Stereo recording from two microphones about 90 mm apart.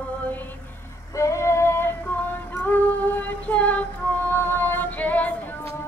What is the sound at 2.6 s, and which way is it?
Music, 20° left (ahead or behind).